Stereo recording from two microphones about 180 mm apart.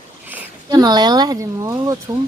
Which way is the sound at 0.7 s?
20° right (ahead or behind).